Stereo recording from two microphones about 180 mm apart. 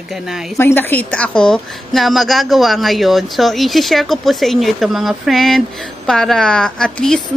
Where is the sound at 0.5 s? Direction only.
10° left (ahead or behind).